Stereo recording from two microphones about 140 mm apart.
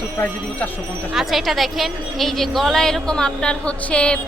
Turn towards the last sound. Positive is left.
turn(degrees=10)  # may be behind; listen again after turning